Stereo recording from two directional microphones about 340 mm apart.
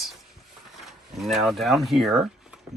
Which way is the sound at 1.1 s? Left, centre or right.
Centre.